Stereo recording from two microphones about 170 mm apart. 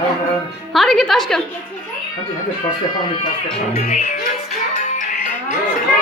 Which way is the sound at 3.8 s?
40° left (ahead or behind).